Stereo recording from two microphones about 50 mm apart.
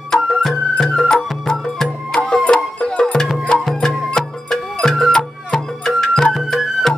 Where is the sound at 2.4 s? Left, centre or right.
Centre.